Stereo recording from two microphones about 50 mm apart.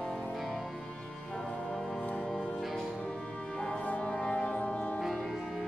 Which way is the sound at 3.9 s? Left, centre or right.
Left.